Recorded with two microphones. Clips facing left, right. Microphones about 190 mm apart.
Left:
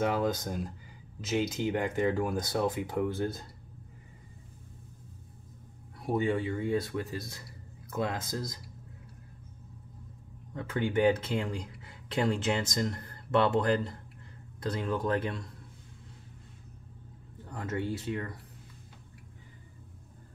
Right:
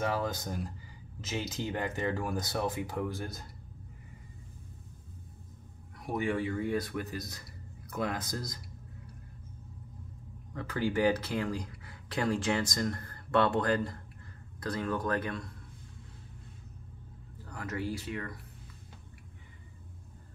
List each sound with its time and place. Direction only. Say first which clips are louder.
0.0 s speech: left 4 dB; 15° left (ahead or behind)
5.9 s speech: left 3 dB; 25° left (ahead or behind)
10.5 s speech: left 2 dB; 25° left (ahead or behind)
17.4 s speech: left 3 dB; 25° left (ahead or behind)